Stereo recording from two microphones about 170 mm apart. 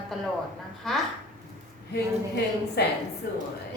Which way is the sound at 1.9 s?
80° left.